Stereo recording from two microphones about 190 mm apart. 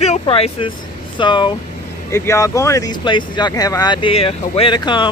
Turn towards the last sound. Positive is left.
turn(degrees=25)  # may be behind; listen again after turning